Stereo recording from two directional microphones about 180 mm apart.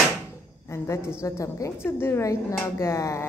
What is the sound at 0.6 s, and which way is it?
A woman's voice, 15° left (ahead or behind).